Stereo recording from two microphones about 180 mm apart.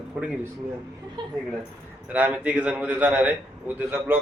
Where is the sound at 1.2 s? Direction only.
25° right (ahead or behind).